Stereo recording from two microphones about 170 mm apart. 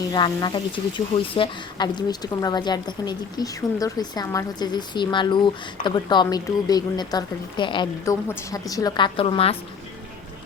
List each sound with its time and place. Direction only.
0.1 s speech: 25° left (ahead or behind)